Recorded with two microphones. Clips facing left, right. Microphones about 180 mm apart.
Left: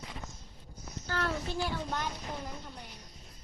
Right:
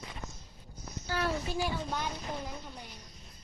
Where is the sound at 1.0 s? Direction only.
10° right (ahead or behind).